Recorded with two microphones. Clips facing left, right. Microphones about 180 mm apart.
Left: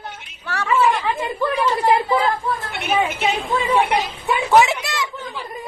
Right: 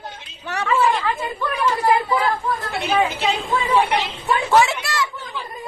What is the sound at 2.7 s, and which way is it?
A woman's voice, 35° right (ahead or behind).